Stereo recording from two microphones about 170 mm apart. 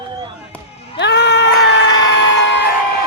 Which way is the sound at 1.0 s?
90° left.